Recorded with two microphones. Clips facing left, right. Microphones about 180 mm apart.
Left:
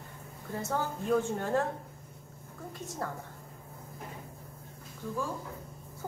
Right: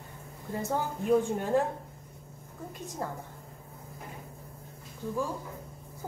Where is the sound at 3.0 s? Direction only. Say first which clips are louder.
Right 1 dB; 15° right (ahead or behind).